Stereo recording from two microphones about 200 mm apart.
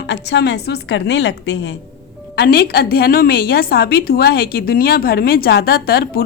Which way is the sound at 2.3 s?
50° left (ahead or behind).